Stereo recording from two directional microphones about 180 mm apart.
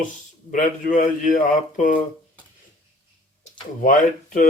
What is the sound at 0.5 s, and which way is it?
Speech, 50° left (ahead or behind).